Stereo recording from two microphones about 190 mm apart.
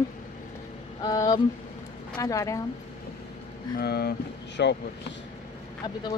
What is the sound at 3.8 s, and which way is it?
Speech, 55° left (ahead or behind).